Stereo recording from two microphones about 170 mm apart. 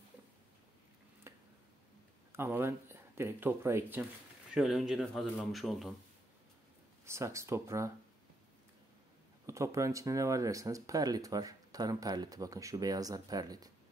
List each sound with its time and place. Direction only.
1.3 s a sound: 15° right (ahead or behind)
2.3 s speech: 15° right (ahead or behind)
4.6 s speech: centre (ahead or behind)
7.1 s speech: 15° right (ahead or behind)
9.5 s speech: 15° right (ahead or behind)